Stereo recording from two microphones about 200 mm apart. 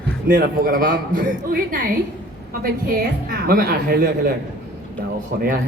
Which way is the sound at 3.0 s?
45° right (ahead or behind).